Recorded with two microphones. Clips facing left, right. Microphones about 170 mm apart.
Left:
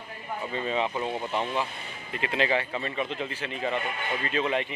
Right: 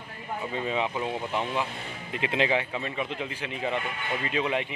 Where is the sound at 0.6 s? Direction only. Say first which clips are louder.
Left 1 dB; 10° right (ahead or behind).